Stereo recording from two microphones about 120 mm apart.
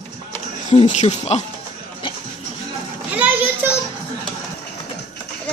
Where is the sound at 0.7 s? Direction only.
75° left (ahead or behind).